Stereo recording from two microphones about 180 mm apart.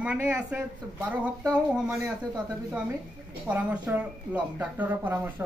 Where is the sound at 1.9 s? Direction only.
20° right (ahead or behind).